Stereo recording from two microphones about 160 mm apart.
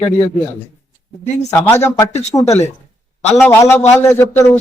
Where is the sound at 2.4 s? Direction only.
45° left (ahead or behind).